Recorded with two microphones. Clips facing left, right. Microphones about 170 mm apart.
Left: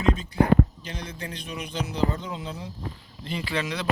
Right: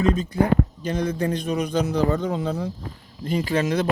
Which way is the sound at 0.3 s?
50° right (ahead or behind).